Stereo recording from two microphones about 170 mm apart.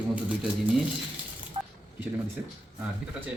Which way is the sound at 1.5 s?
35° right (ahead or behind).